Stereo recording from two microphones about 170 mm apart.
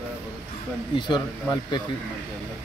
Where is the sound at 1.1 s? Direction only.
25° left (ahead or behind).